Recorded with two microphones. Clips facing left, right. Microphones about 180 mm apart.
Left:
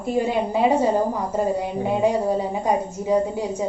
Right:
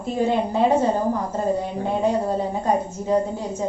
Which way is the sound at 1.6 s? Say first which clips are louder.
Left 2 dB; 10° left (ahead or behind).